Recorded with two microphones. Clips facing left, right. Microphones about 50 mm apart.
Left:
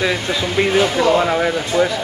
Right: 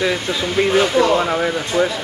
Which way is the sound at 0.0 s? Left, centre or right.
Centre.